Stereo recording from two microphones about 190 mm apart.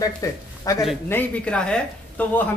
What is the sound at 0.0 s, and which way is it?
Speech, 15° left (ahead or behind).